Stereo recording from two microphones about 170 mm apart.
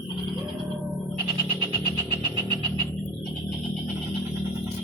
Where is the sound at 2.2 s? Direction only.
30° right (ahead or behind).